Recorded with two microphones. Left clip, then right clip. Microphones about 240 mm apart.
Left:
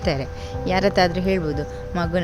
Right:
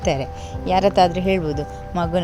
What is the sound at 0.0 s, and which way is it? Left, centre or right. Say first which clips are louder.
Speech: right 2 dB; centre.